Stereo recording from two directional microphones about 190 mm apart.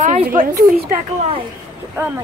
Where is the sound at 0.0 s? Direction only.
45° right (ahead or behind).